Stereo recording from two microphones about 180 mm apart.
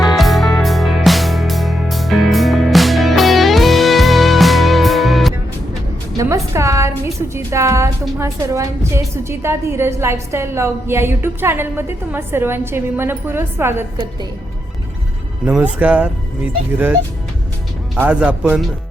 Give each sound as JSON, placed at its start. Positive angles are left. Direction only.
{"t": 0.2, "sound": "music", "side_deg": 0}
{"t": 6.1, "sound": "a woman's voice", "side_deg": -15}
{"t": 15.4, "sound": "a woman's voice", "side_deg": -10}